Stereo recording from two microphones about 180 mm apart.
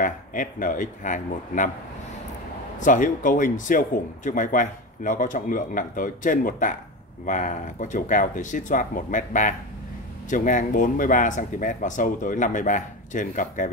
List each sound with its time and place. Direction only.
0.0 s speech: 50° left (ahead or behind)
2.8 s speech: 45° left (ahead or behind)